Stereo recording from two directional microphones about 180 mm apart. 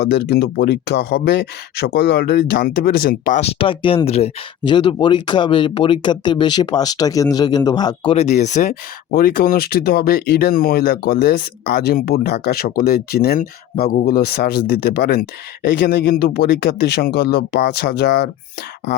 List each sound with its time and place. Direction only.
0.0 s speech: 60° left (ahead or behind)
3.4 s speech: 30° left (ahead or behind)
8.1 s speech: 40° left (ahead or behind); by 18.3 s 70° left (ahead or behind)